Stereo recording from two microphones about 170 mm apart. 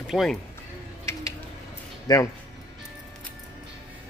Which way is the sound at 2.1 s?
20° left (ahead or behind).